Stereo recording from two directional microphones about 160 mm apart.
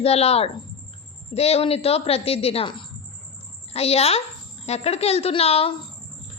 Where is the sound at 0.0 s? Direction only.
40° left (ahead or behind).